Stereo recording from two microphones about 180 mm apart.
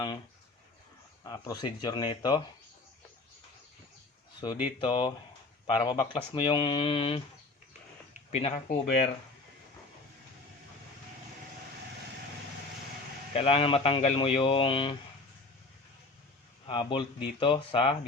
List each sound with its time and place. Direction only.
1.2 s speech: 20° left (ahead or behind)
4.4 s speech: 30° left (ahead or behind)
8.3 s speech: 35° left (ahead or behind)
13.3 s speech: 30° left (ahead or behind)
16.6 s speech: 25° left (ahead or behind)